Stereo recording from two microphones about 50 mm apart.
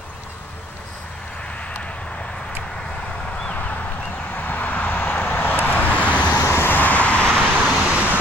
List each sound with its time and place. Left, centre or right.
3.5 s a sound: left
4.4 s vehicle: left
6.5 s vehicle: left
7.5 s vehicle: right